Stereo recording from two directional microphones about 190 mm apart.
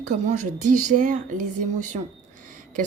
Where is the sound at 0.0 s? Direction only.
40° right (ahead or behind).